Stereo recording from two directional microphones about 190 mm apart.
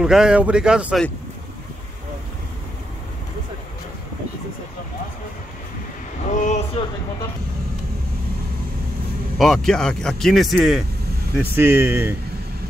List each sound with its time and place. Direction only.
0.0 s speech: 5° right (ahead or behind)
6.3 s a sound: 40° left (ahead or behind)
9.4 s speech: 5° left (ahead or behind)
11.5 s speech: 10° right (ahead or behind)